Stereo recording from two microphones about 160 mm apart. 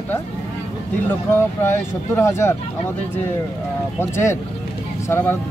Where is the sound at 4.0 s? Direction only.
15° left (ahead or behind).